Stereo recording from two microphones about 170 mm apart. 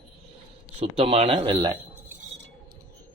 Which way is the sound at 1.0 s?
35° right (ahead or behind).